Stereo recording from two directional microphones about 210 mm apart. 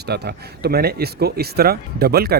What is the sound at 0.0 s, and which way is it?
Speech, 50° right (ahead or behind).